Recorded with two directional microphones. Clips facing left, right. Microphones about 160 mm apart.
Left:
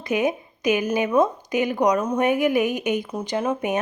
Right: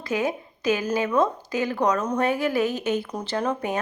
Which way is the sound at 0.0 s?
20° left (ahead or behind).